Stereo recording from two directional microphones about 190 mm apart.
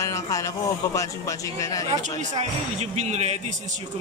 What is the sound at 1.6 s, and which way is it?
Speech, 20° left (ahead or behind).